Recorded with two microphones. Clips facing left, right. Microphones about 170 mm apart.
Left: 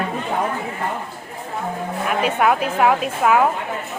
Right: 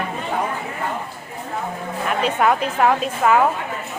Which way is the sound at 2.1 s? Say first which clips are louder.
Even; 5° left (ahead or behind).